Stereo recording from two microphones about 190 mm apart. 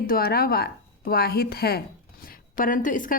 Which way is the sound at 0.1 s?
55° left (ahead or behind).